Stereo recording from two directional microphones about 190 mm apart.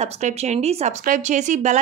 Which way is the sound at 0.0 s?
35° right (ahead or behind).